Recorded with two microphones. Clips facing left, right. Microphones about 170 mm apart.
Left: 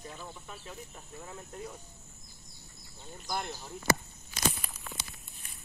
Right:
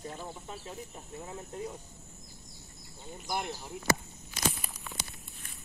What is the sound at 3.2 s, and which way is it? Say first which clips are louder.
Speech: right 1 dB; 10° right (ahead or behind).